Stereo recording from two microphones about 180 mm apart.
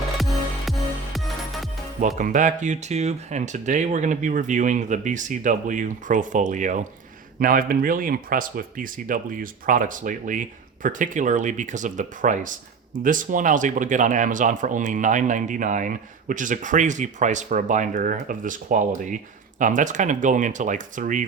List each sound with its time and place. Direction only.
0.2 s music: centre (ahead or behind)
2.0 s speech: 45° right (ahead or behind)